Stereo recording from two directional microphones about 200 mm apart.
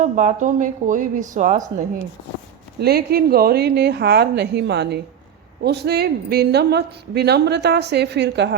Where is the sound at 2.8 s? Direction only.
50° right (ahead or behind).